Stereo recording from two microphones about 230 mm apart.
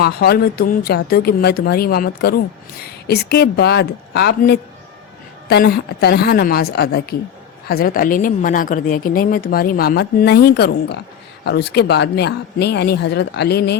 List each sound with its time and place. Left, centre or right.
0.0 s a woman's voice: left